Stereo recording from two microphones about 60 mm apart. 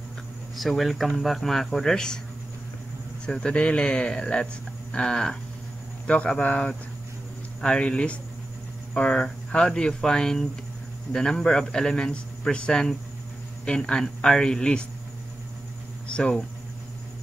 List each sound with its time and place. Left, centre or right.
0.6 s speech: centre
3.3 s a man's voice: centre
16.1 s speech: centre